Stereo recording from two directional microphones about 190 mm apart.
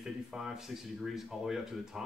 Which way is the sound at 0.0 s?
Centre (ahead or behind).